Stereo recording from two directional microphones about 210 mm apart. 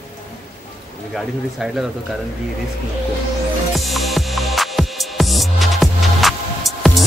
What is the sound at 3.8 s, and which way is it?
Music, centre (ahead or behind).